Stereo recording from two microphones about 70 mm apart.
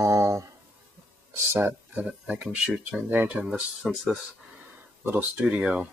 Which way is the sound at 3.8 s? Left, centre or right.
Centre.